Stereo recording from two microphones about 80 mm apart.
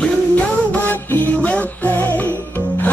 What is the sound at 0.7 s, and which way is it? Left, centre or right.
Music, left.